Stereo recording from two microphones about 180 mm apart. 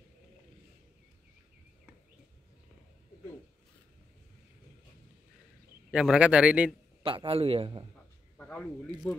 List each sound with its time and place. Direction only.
5.9 s a man's voice: 5° right (ahead or behind)
7.0 s a man's voice: 30° right (ahead or behind)
8.4 s a sound: 5° left (ahead or behind)
9.0 s a man's voice: 10° left (ahead or behind)